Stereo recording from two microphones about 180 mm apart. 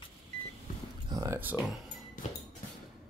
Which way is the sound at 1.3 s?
5° right (ahead or behind).